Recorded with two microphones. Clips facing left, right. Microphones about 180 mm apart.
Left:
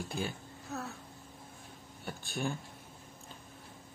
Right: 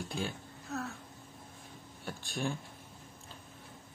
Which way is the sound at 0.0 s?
Centre (ahead or behind).